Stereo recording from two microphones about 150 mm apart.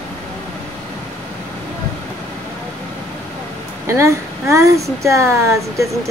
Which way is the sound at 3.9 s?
20° right (ahead or behind).